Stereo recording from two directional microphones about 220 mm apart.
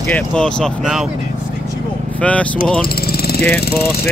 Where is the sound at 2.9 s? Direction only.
45° left (ahead or behind).